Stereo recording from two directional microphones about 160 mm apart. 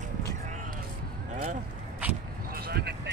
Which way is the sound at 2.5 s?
80° right.